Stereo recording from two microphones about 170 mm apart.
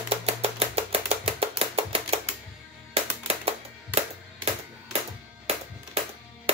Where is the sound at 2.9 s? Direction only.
35° right (ahead or behind).